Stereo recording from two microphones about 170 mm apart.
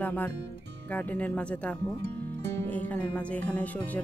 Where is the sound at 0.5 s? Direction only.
90° right.